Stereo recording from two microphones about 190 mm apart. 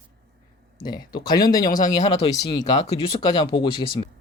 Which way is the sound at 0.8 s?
20° left (ahead or behind).